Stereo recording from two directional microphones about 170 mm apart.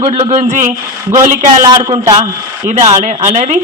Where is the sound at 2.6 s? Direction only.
45° right (ahead or behind).